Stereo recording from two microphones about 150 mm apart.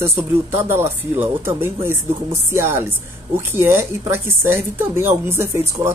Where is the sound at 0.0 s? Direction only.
15° right (ahead or behind).